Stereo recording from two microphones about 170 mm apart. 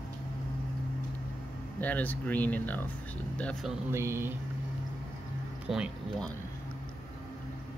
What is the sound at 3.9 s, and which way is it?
Speech, 15° right (ahead or behind).